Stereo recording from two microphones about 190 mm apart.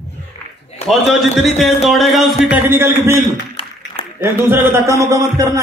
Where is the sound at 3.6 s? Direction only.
30° left (ahead or behind).